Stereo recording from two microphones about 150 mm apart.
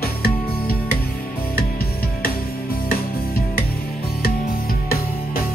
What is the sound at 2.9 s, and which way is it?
Music, 80° left.